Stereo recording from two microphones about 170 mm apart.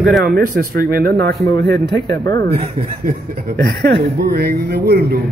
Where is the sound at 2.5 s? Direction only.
40° right (ahead or behind); by 3.9 s 65° right (ahead or behind).